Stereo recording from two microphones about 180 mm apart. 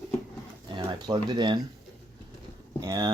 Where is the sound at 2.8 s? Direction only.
20° right (ahead or behind).